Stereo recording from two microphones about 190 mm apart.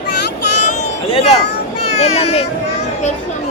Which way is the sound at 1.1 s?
30° left (ahead or behind).